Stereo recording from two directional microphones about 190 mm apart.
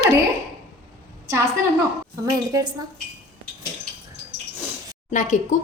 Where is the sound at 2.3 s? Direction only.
20° right (ahead or behind).